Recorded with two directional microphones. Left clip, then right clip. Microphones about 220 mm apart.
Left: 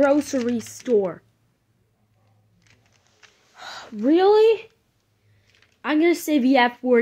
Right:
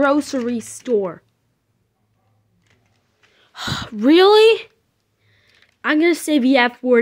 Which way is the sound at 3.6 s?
35° right (ahead or behind).